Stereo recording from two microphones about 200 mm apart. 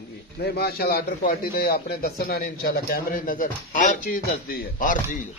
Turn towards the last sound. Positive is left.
turn(degrees=40)  # may be behind; listen again after turning